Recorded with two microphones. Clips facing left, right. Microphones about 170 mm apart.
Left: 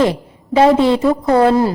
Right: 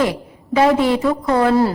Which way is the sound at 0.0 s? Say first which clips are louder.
Left 4 dB; 25° left (ahead or behind).